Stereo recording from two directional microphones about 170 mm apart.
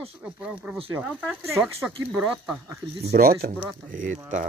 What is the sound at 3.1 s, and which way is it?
Speech, 60° right (ahead or behind).